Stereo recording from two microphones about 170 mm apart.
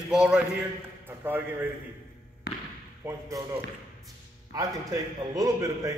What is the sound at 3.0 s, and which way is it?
Speech, 15° right (ahead or behind).